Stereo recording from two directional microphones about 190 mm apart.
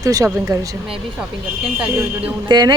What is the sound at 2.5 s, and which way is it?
Speech, 20° right (ahead or behind).